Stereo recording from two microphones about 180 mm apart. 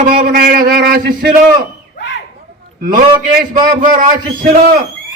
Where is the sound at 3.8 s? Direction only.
50° right (ahead or behind).